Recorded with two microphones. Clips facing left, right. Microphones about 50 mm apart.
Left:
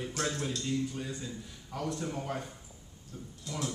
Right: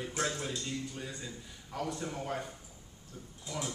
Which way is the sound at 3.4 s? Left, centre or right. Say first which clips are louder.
Left 2 dB; centre.